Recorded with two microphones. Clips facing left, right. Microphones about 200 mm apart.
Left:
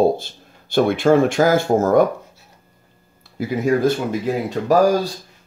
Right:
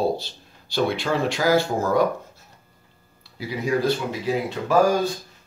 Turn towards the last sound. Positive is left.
turn(degrees=40)  # may be behind; listen again after turning